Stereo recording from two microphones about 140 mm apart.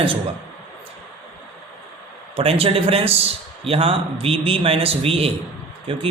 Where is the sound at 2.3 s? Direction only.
45° right (ahead or behind).